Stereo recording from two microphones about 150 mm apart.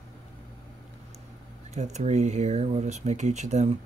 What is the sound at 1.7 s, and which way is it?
Speech, 50° right (ahead or behind).